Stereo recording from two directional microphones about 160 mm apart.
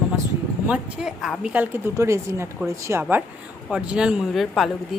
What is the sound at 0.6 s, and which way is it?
A woman's voice, 5° right (ahead or behind).